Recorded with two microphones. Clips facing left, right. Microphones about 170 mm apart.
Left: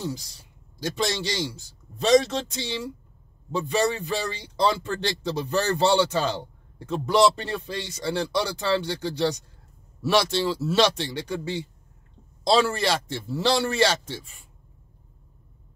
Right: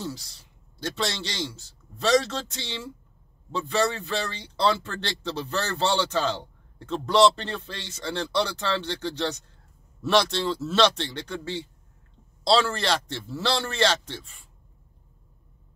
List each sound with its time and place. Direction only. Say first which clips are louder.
0.7 s speech: left 3 dB; 10° left (ahead or behind)